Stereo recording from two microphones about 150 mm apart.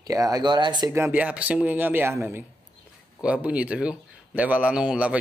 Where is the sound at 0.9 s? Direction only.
15° right (ahead or behind).